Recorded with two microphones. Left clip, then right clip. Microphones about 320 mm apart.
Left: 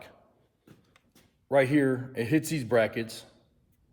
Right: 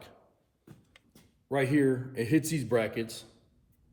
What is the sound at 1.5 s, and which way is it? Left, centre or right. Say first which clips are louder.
A man's voice: left 3 dB; left.